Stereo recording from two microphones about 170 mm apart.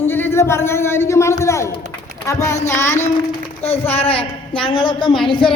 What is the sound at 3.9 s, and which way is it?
A man's voice, 35° left (ahead or behind).